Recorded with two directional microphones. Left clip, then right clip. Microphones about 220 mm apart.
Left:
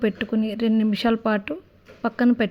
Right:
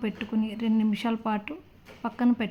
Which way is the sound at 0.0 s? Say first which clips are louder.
Left 7 dB; 20° left (ahead or behind).